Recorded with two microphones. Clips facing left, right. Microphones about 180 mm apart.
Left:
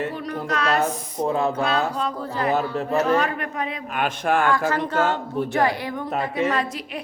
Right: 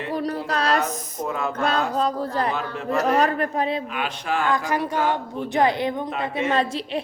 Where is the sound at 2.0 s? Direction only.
35° right (ahead or behind).